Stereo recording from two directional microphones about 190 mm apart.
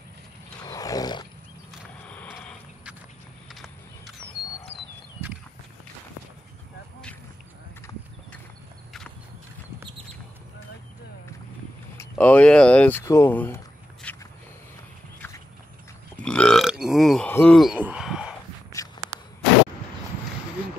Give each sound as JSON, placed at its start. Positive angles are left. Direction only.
{"t": 0.6, "sound": "roaring cats", "side_deg": 20}
{"t": 2.0, "sound": "a sound", "side_deg": 5}
{"t": 7.9, "sound": "clip-clop", "side_deg": 15}
{"t": 12.0, "sound": "speech", "side_deg": 10}
{"t": 14.0, "sound": "walk", "side_deg": 5}
{"t": 16.2, "sound": "burping", "side_deg": 5}